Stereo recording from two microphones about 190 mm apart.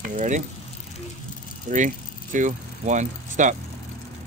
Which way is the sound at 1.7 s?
40° right (ahead or behind).